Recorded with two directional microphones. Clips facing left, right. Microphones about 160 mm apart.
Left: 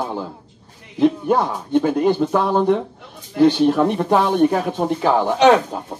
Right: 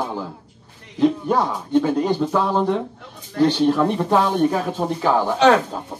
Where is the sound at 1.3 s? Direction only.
10° left (ahead or behind).